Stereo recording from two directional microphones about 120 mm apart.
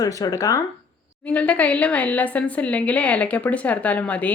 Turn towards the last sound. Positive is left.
turn(degrees=10)  # may be behind; listen again after turning